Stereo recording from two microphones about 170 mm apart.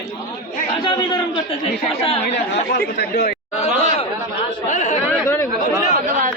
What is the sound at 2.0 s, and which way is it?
Speech, 40° left (ahead or behind).